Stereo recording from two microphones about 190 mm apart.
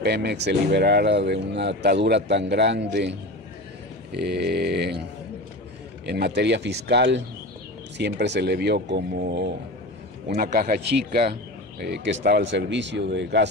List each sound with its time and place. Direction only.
0.0 s speech: 60° right (ahead or behind)
6.0 s speech: 60° right (ahead or behind)
10.2 s speech: 50° right (ahead or behind)